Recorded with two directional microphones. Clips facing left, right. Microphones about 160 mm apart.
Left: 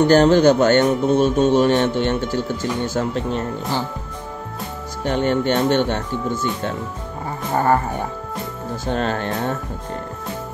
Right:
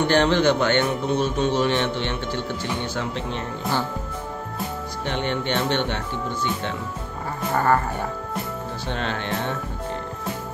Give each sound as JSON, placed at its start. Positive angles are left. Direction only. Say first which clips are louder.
{"t": 0.1, "sound": "a man's voice", "louder": "left 5 dB", "side_deg": 40}
{"t": 5.0, "sound": "a man's voice", "louder": "left 7 dB", "side_deg": 45}
{"t": 7.5, "sound": "speech", "louder": "left 3 dB", "side_deg": 20}
{"t": 8.8, "sound": "a man's voice", "louder": "left 7 dB", "side_deg": 40}